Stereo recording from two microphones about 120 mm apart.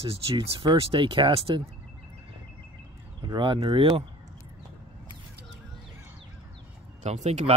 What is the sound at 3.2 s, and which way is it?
Speech, 40° right (ahead or behind).